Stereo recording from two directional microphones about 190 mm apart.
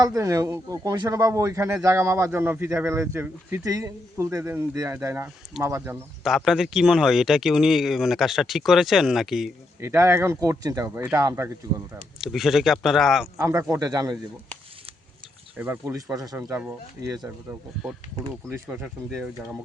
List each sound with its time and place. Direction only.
0.0 s speech: 20° right (ahead or behind)
6.2 s speech: centre (ahead or behind)
9.8 s speech: 15° right (ahead or behind)
12.2 s speech: centre (ahead or behind)
13.4 s a man's voice: 15° right (ahead or behind)
15.5 s speech: 10° right (ahead or behind)
16.6 s speech: 10° right (ahead or behind)
18.5 s speech: 5° right (ahead or behind)